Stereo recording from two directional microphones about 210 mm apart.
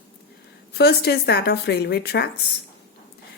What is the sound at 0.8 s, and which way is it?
Speech, 50° left (ahead or behind).